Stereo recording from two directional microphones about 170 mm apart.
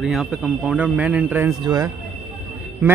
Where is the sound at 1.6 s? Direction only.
20° right (ahead or behind).